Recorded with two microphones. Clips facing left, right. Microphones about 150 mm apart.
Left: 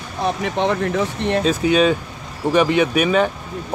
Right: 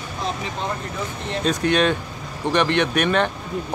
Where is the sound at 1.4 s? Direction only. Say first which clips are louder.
Left 3 dB; 5° left (ahead or behind).